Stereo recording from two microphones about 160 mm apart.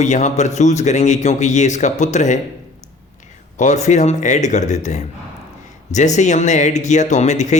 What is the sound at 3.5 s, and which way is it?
Speech, 50° left (ahead or behind).